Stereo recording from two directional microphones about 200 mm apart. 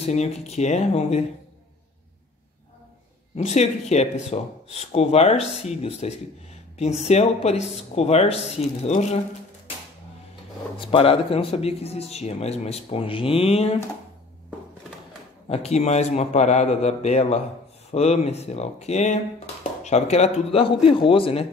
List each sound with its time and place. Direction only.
0.0 s speech: 30° left (ahead or behind)
3.3 s speech: 35° left (ahead or behind)
10.8 s speech: 25° left (ahead or behind)
15.4 s speech: 30° left (ahead or behind)